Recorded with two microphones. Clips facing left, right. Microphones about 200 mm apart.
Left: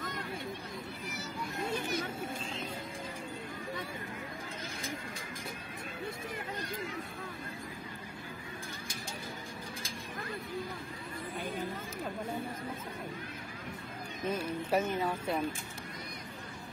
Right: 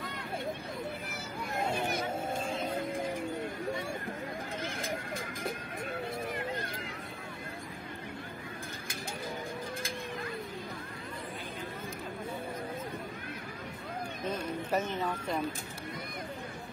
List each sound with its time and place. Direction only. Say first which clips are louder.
1.1 s vehicle: right 2 dB; 55° right (ahead or behind)
4.7 s run: right 4 dB; 55° right (ahead or behind)
14.2 s a sound: left 2 dB; 10° left (ahead or behind)